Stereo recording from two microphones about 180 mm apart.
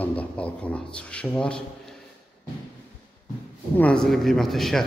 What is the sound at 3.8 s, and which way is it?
Speech, 5° left (ahead or behind).